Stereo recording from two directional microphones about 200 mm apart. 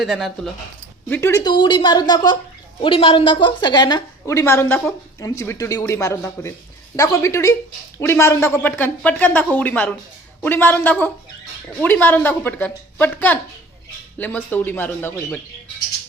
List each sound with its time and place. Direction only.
0.0 s speech: centre (ahead or behind)
1.1 s a woman's voice: 15° left (ahead or behind)